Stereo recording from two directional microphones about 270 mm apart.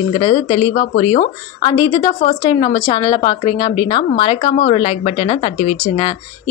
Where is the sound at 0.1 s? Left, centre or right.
Left.